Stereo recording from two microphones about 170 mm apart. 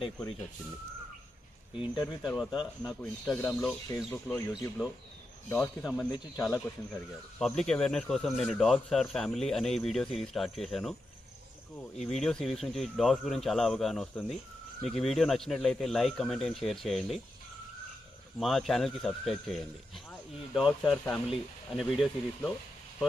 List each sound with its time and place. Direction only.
1.8 s speech: centre (ahead or behind)
2.6 s speech: 20° left (ahead or behind)
3.0 s speech: 10° left (ahead or behind)
12.0 s speech: 5° left (ahead or behind)
18.4 s speech: centre (ahead or behind)